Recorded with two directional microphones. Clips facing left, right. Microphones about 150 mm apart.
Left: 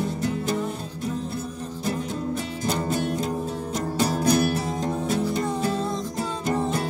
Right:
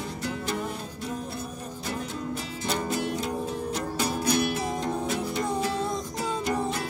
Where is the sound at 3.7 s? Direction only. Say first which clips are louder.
Left 8 dB; 45° left (ahead or behind).